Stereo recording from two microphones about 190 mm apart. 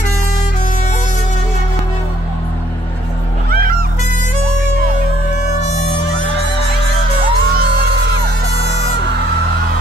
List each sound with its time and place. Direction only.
3.4 s music: 50° right (ahead or behind)
7.5 s music: 60° right (ahead or behind)